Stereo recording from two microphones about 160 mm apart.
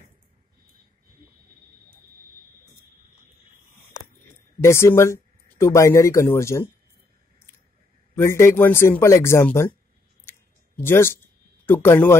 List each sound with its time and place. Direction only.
4.6 s speech: 15° left (ahead or behind)
8.2 s speech: 15° left (ahead or behind)
10.8 s speech: 15° left (ahead or behind)